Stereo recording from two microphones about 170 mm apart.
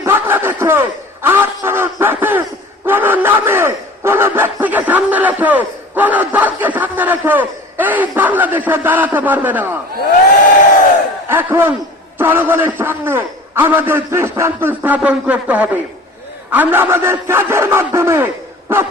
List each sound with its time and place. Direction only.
0.0 s a man's voice: 15° right (ahead or behind)
11.3 s speech: 15° right (ahead or behind)